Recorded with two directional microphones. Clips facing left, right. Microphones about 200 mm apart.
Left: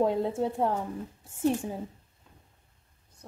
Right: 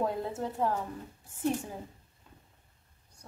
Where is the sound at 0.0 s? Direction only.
25° left (ahead or behind).